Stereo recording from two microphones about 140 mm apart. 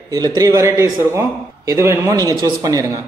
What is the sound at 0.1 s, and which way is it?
Speech, 25° right (ahead or behind).